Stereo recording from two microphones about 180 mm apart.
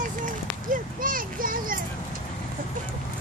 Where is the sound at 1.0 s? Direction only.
50° right (ahead or behind).